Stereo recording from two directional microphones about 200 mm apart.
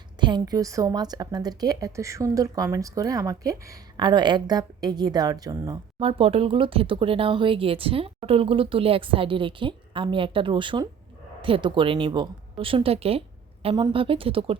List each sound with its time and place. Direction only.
0.2 s a woman's voice: 20° right (ahead or behind)
6.0 s a woman's voice: 30° right (ahead or behind)